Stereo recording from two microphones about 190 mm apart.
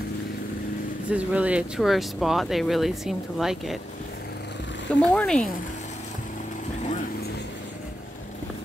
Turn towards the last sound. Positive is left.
turn(degrees=40)  # may be behind; listen again after turning